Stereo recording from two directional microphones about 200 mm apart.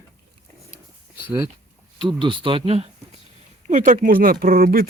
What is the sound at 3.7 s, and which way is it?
Speech, 40° right (ahead or behind).